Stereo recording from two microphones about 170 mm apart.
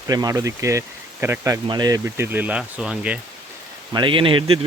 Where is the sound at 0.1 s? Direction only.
20° right (ahead or behind); by 3.2 s 5° right (ahead or behind).